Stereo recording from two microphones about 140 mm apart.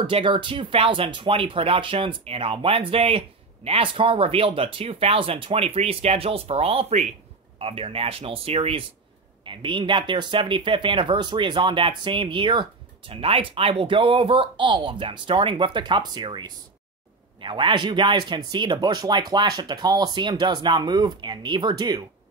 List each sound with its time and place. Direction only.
0.0 s speech: 35° right (ahead or behind)